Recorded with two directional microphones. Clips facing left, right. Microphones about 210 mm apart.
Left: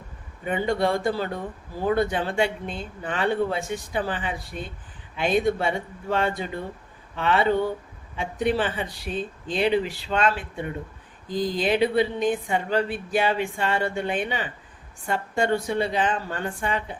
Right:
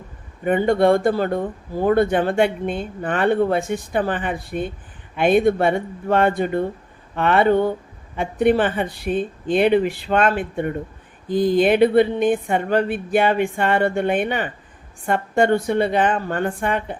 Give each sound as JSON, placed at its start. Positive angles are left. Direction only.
{"t": 0.4, "sound": "speech", "side_deg": -55}